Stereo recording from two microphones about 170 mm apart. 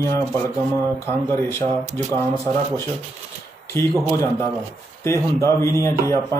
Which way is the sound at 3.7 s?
15° left (ahead or behind).